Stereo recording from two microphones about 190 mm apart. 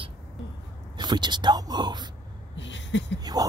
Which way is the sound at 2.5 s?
70° left (ahead or behind).